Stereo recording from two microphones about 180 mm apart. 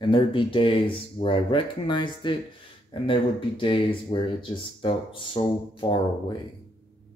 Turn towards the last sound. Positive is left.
turn(degrees=25)  # may be behind; listen again after turning